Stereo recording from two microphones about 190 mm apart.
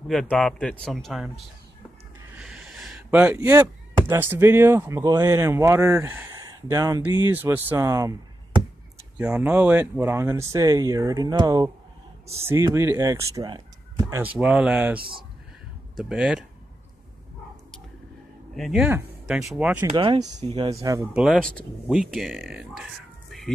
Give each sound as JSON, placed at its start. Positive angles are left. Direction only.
{"t": 0.1, "sound": "speech", "side_deg": 5}
{"t": 2.3, "sound": "speech", "side_deg": -5}
{"t": 14.2, "sound": "speech", "side_deg": -5}
{"t": 15.0, "sound": "speech", "side_deg": -25}
{"t": 16.0, "sound": "speech", "side_deg": -5}
{"t": 18.6, "sound": "speech", "side_deg": -5}
{"t": 19.9, "sound": "speech", "side_deg": -25}
{"t": 20.2, "sound": "speech", "side_deg": -40}
{"t": 20.5, "sound": "speech", "side_deg": -20}
{"t": 21.1, "sound": "speech", "side_deg": -5}